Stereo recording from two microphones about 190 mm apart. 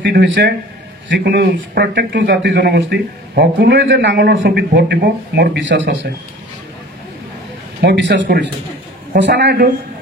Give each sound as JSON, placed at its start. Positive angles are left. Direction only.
{"t": 0.0, "sound": "speech", "side_deg": -60}
{"t": 7.8, "sound": "speech", "side_deg": -60}